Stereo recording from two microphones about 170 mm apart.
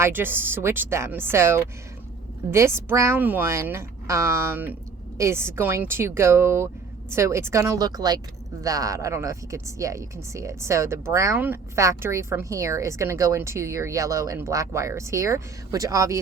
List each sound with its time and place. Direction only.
0.0 s speech: 10° right (ahead or behind)